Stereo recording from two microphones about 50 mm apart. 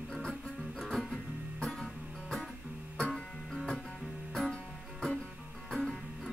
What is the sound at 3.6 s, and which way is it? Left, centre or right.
Music, centre.